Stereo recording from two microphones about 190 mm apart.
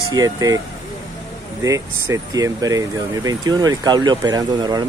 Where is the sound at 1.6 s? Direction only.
15° right (ahead or behind).